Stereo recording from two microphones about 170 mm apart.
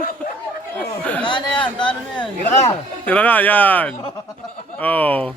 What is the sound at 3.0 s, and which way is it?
Speech, 10° left (ahead or behind).